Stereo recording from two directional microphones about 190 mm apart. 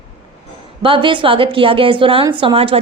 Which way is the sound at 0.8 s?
25° right (ahead or behind).